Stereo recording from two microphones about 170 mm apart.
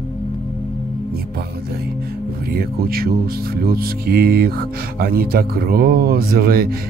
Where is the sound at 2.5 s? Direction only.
60° right (ahead or behind).